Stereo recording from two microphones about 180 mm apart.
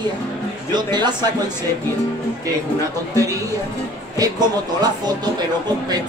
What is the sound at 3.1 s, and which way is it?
Speech, 20° right (ahead or behind).